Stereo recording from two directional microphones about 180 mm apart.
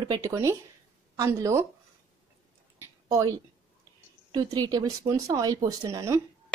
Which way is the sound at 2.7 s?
20° right (ahead or behind).